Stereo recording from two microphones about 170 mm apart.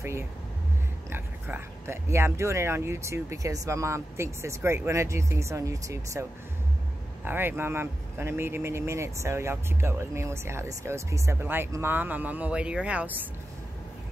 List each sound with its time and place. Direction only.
1.1 s speech: 15° right (ahead or behind)
7.2 s speech: 10° right (ahead or behind)